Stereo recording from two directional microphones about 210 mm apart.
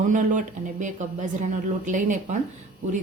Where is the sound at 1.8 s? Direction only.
35° right (ahead or behind).